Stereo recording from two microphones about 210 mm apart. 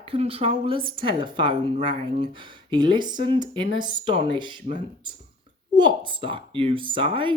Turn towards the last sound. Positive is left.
turn(degrees=-25)  # may be behind; listen again after turning